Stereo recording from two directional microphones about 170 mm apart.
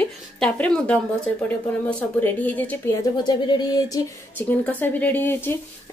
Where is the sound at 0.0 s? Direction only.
5° left (ahead or behind).